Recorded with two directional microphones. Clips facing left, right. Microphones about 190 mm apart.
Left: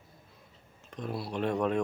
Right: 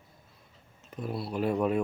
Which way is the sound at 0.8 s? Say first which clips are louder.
Right 1 dB; 5° right (ahead or behind).